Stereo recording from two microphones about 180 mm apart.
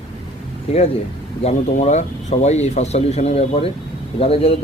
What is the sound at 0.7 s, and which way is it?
Speech, 35° left (ahead or behind).